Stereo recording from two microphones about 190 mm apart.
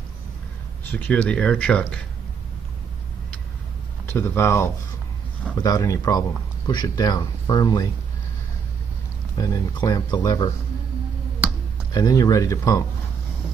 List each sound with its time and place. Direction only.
0.9 s speech: 5° left (ahead or behind)
4.0 s speech: 15° left (ahead or behind)
9.4 s speech: 20° left (ahead or behind)
11.9 s speech: 20° left (ahead or behind)